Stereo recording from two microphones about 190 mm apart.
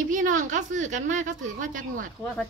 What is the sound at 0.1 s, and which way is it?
A woman's voice, 45° right (ahead or behind).